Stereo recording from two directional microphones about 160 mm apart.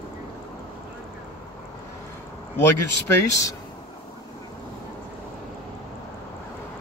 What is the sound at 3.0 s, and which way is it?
Speech, 20° left (ahead or behind).